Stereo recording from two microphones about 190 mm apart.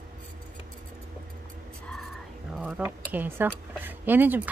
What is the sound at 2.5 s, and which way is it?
Speech, 5° right (ahead or behind).